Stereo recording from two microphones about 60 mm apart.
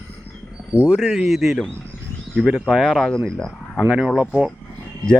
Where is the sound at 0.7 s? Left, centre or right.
Right.